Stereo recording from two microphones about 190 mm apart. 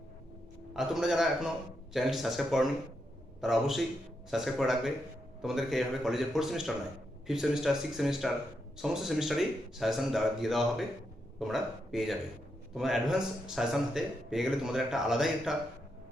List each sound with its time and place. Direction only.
0.7 s a man's voice: centre (ahead or behind)